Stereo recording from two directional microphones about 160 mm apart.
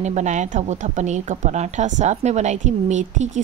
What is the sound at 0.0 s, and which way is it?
Speech, 45° right (ahead or behind).